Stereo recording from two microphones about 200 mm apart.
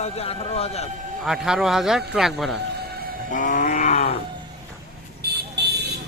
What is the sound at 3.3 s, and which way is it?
Grunt, 40° left (ahead or behind).